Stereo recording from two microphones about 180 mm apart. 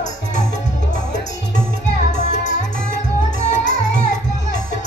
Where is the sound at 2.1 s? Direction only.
40° left (ahead or behind).